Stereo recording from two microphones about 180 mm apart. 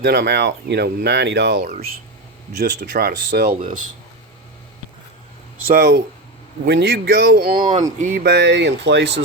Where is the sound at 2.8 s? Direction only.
50° right (ahead or behind).